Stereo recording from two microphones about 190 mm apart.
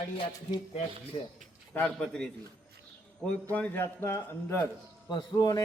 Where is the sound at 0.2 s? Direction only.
30° left (ahead or behind).